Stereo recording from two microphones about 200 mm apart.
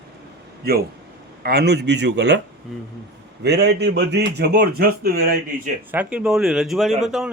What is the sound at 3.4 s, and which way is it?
Speech, 55° right (ahead or behind).